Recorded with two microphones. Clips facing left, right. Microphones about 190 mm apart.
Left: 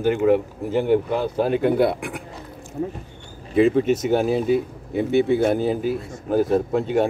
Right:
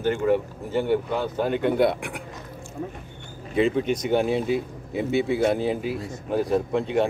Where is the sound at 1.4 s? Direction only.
40° left (ahead or behind).